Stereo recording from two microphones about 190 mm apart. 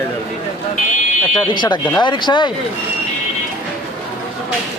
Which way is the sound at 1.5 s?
25° left (ahead or behind).